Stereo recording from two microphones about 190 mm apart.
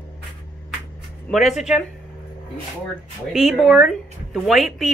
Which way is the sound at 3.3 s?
Centre (ahead or behind).